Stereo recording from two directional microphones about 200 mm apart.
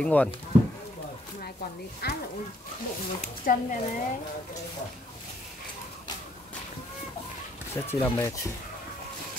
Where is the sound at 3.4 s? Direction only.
40° left (ahead or behind).